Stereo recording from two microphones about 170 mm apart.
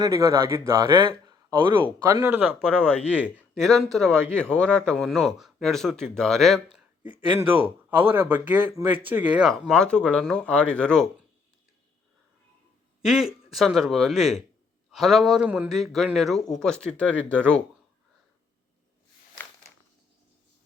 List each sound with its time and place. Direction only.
0.0 s speech: 20° right (ahead or behind)
0.9 s speech: 30° right (ahead or behind)
2.2 s speech: 10° right (ahead or behind)
2.8 s a man's voice: 10° left (ahead or behind)
6.7 s a sound: 10° right (ahead or behind)
7.4 s a man's voice: 35° right (ahead or behind)
7.9 s a man's voice: 10° right (ahead or behind); by 11.1 s 5° left (ahead or behind)
13.0 s a man's voice: centre (ahead or behind)